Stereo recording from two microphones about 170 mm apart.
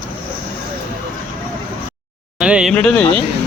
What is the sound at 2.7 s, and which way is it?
Speech, 5° left (ahead or behind).